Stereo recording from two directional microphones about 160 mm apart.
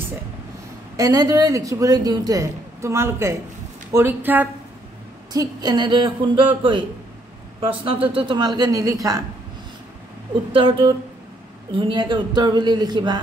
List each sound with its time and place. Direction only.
0.9 s speech: 25° right (ahead or behind)
5.3 s speech: 25° right (ahead or behind)
10.5 s speech: 35° right (ahead or behind)